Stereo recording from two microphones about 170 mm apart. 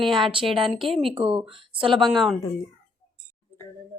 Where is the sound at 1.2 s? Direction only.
30° right (ahead or behind).